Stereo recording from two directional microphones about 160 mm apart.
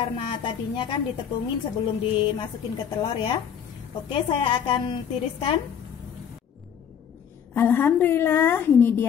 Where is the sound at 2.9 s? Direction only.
30° left (ahead or behind).